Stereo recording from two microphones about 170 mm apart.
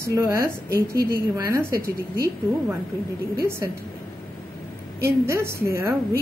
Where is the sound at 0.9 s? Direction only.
65° right (ahead or behind).